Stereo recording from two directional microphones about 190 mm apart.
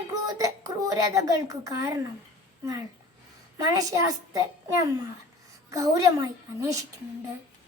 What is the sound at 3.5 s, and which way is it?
A woman's voice, 20° right (ahead or behind).